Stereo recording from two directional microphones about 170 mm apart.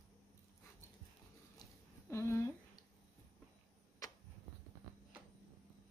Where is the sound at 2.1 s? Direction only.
15° left (ahead or behind).